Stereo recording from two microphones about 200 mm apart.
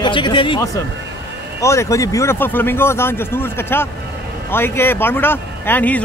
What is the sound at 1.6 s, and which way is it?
Speech, 15° left (ahead or behind).